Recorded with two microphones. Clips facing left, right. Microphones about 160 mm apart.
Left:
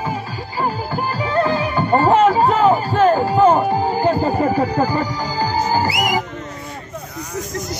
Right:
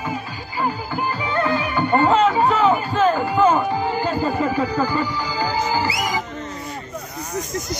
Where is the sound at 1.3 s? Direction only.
30° left (ahead or behind).